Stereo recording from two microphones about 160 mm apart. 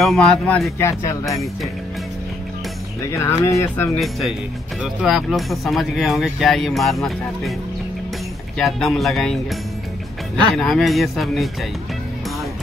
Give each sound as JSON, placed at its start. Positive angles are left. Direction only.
{"t": 0.0, "sound": "speech", "side_deg": 0}
{"t": 0.7, "sound": "speech", "side_deg": 20}
{"t": 1.3, "sound": "speech", "side_deg": 0}
{"t": 3.1, "sound": "speech", "side_deg": 15}
{"t": 5.0, "sound": "speech", "side_deg": 0}
{"t": 8.5, "sound": "speech", "side_deg": 0}
{"t": 10.5, "sound": "speech", "side_deg": 0}